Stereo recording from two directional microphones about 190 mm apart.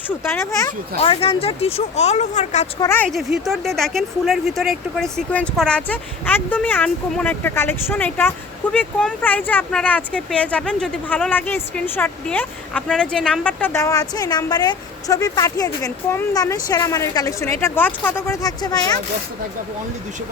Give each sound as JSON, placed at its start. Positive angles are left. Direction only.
{"t": 0.3, "sound": "speech", "side_deg": 15}
{"t": 0.9, "sound": "speech", "side_deg": 30}
{"t": 2.8, "sound": "speech", "side_deg": 10}
{"t": 3.1, "sound": "speech", "side_deg": 0}